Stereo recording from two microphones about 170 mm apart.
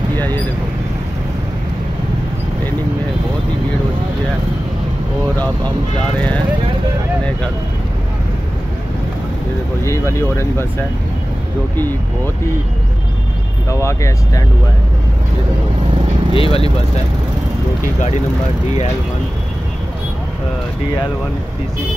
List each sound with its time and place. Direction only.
0.1 s vehicle: 10° left (ahead or behind)
6.1 s speech: 10° left (ahead or behind)
9.8 s speech: 15° left (ahead or behind)
13.7 s speech: 15° left (ahead or behind)
16.3 s speech: 35° left (ahead or behind)